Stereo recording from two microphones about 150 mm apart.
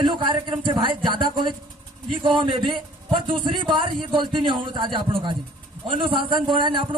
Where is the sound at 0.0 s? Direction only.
30° right (ahead or behind).